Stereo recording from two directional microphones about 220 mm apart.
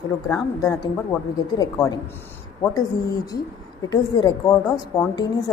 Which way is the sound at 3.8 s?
15° left (ahead or behind).